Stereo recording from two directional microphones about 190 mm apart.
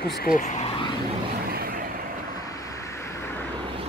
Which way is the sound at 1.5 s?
50° right (ahead or behind).